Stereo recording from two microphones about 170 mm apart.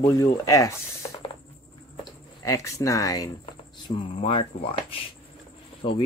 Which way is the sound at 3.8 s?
35° left (ahead or behind).